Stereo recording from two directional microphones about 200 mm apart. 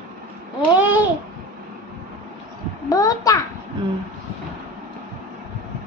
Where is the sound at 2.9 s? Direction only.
15° left (ahead or behind).